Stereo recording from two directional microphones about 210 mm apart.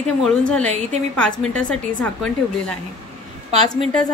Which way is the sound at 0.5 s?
5° left (ahead or behind).